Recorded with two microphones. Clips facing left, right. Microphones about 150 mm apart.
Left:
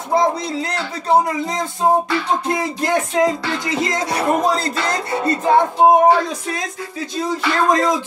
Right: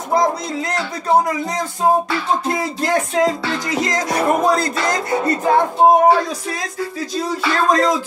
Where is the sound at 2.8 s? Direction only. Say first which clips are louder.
Even; 20° left (ahead or behind).